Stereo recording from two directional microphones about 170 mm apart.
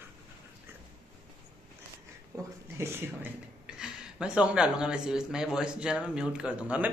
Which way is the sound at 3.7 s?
5° right (ahead or behind).